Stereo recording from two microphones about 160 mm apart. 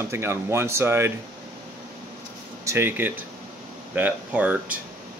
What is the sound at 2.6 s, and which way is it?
Speech, 15° right (ahead or behind).